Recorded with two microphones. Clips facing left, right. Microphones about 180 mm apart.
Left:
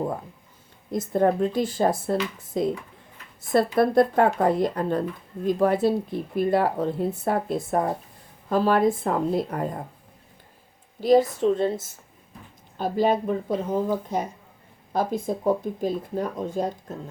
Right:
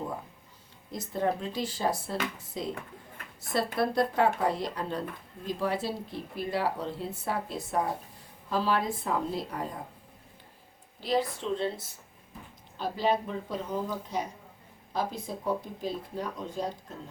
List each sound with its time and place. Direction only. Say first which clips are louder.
0.9 s speech: left 8 dB; 50° left (ahead or behind)
11.0 s speech: left 11 dB; 45° left (ahead or behind)